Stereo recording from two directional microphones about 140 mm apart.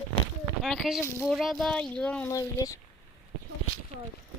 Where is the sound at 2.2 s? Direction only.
25° left (ahead or behind).